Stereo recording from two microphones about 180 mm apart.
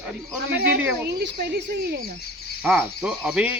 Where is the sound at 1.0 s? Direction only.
70° right (ahead or behind).